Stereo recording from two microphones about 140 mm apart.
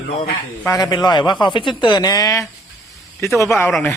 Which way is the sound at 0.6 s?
25° left (ahead or behind).